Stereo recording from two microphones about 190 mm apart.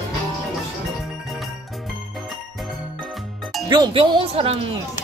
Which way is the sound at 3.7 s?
25° right (ahead or behind).